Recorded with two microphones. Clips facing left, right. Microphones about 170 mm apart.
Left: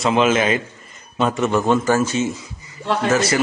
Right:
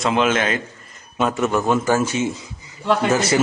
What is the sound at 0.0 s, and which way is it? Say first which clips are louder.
A man's voice: left 2 dB; centre (ahead or behind).